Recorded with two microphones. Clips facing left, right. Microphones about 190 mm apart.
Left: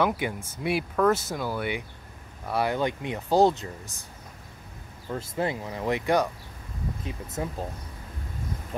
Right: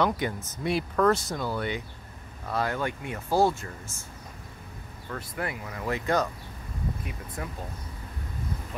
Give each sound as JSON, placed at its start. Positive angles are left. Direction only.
{"t": 0.0, "sound": "speech", "side_deg": 10}
{"t": 5.1, "sound": "speech", "side_deg": 25}
{"t": 7.4, "sound": "speech", "side_deg": 25}